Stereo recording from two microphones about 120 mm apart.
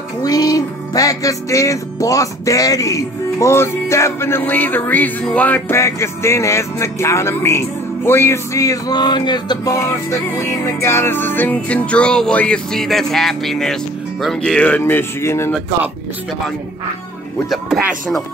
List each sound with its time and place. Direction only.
0.2 s music: 30° left (ahead or behind)
9.8 s music: 25° left (ahead or behind)
17.5 s speech: centre (ahead or behind)